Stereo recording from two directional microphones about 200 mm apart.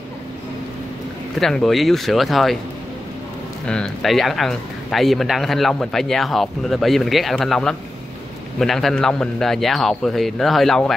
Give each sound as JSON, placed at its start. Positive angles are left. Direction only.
{"t": 1.4, "sound": "speech", "side_deg": 0}
{"t": 3.6, "sound": "speech", "side_deg": 5}